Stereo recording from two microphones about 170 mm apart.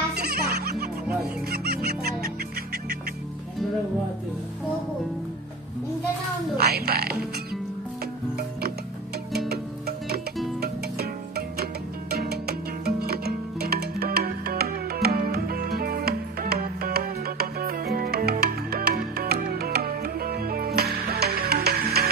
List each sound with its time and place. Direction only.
0.1 s music: 65° right (ahead or behind)
6.6 s music: 65° right (ahead or behind)
9.5 s music: 70° right (ahead or behind)